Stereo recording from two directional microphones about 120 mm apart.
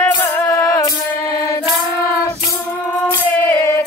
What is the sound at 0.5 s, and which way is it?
Music, 25° left (ahead or behind).